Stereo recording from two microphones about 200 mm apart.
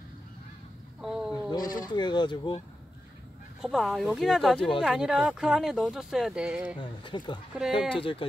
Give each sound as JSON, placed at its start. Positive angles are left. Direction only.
{"t": 1.0, "sound": "a sound", "side_deg": -5}
{"t": 1.6, "sound": "speech", "side_deg": 45}
{"t": 2.0, "sound": "speech", "side_deg": 20}
{"t": 3.6, "sound": "speech", "side_deg": 0}
{"t": 6.8, "sound": "speech", "side_deg": 25}
{"t": 7.5, "sound": "speech", "side_deg": -5}
{"t": 8.0, "sound": "speech", "side_deg": 25}